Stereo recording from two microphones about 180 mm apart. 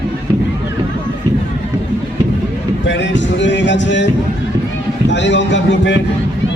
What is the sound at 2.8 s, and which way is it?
Speech, 85° left.